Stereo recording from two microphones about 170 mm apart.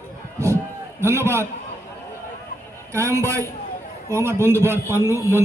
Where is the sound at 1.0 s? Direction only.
15° right (ahead or behind).